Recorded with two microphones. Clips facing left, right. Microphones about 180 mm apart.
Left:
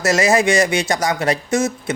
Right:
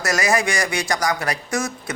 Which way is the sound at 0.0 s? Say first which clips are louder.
Left 5 dB; 25° left (ahead or behind).